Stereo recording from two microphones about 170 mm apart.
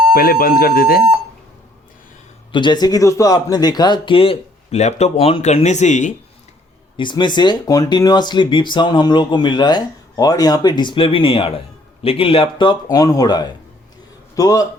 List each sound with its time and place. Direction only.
0.1 s speech: 60° left (ahead or behind)
2.5 s speech: 25° left (ahead or behind); by 6.1 s 45° left (ahead or behind)
6.9 s speech: 30° left (ahead or behind)